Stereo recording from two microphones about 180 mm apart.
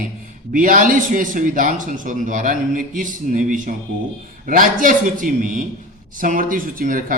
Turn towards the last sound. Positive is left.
turn(degrees=-50)  # may be behind; listen again after turning